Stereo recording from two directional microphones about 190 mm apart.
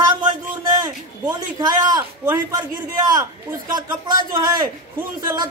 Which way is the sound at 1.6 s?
20° right (ahead or behind).